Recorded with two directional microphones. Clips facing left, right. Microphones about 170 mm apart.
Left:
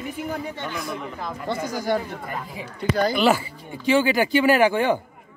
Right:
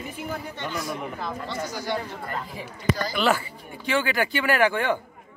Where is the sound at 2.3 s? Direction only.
10° left (ahead or behind).